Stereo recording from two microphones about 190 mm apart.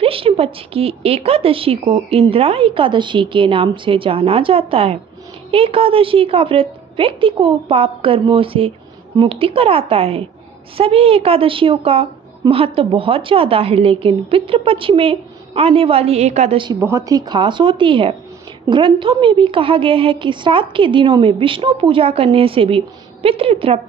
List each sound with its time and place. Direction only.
0.0 s a woman's voice: 30° right (ahead or behind)
16.8 s a woman's voice: 15° right (ahead or behind)